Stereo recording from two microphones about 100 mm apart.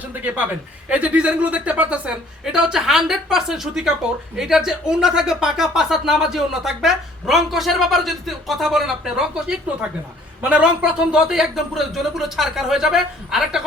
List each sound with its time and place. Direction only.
0.0 s a man's voice: 15° right (ahead or behind)